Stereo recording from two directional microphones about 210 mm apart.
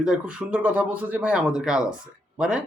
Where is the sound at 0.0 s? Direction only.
5° right (ahead or behind).